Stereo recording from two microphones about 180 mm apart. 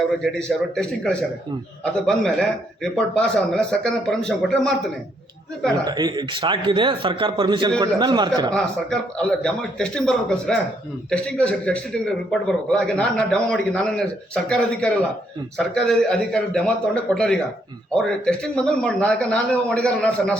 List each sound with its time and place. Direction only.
0.2 s a man's voice: 5° left (ahead or behind)
5.8 s speech: 25° right (ahead or behind)
8.5 s a man's voice: 5° left (ahead or behind)